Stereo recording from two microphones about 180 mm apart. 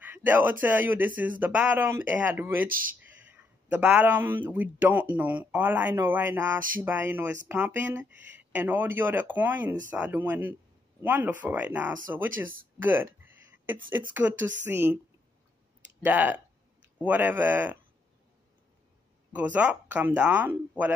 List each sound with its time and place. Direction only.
0.1 s speech: 10° right (ahead or behind)
2.7 s speech: 50° right (ahead or behind)
3.0 s a man's voice: 10° right (ahead or behind)
12.7 s a sound: 10° right (ahead or behind)
14.2 s speech: 15° right (ahead or behind)
16.0 s speech: 10° right (ahead or behind)
19.3 s speech: 10° right (ahead or behind)